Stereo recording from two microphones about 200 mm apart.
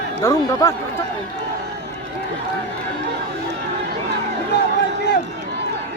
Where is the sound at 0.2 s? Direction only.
10° left (ahead or behind).